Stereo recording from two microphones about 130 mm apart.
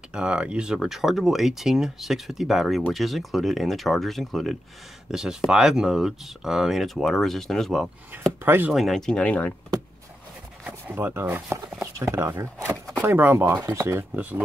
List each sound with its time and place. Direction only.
0.1 s speech: 5° right (ahead or behind)
8.1 s speech: 10° right (ahead or behind)
8.7 s speech: centre (ahead or behind)
10.6 s speech: 15° right (ahead or behind)